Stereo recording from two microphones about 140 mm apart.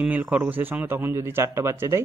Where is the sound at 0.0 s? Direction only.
10° right (ahead or behind).